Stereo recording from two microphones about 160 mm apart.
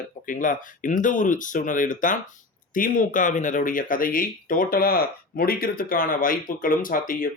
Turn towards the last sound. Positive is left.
turn(degrees=60)  # may be behind; listen again after turning